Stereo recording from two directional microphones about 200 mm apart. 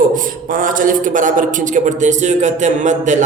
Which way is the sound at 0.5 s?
40° right (ahead or behind).